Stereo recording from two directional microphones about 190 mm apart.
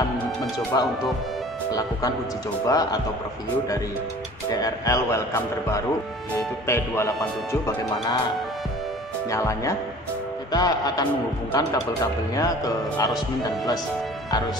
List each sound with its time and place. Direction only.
0.7 s a man's voice: 15° left (ahead or behind)
4.5 s speech: 20° left (ahead or behind)
9.3 s a man's voice: 15° left (ahead or behind)